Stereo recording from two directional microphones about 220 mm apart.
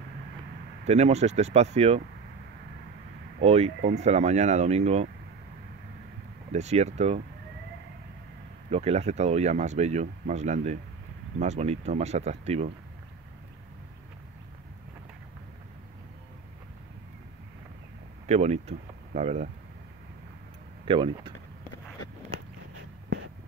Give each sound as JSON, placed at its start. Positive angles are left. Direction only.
{"t": 0.8, "sound": "speech", "side_deg": -30}
{"t": 3.3, "sound": "speech", "side_deg": -30}
{"t": 6.5, "sound": "speech", "side_deg": -30}
{"t": 8.6, "sound": "speech", "side_deg": -30}
{"t": 18.2, "sound": "speech", "side_deg": -30}
{"t": 20.8, "sound": "speech", "side_deg": -20}